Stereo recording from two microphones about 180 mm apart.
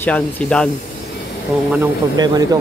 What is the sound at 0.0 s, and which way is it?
Speech, 5° left (ahead or behind).